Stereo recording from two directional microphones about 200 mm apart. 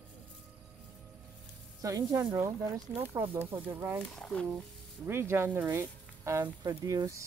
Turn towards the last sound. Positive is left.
turn(degrees=-15)  # may be behind; listen again after turning